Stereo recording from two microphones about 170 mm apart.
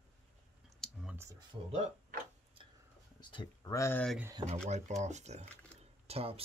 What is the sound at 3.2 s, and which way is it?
Speech, 25° left (ahead or behind).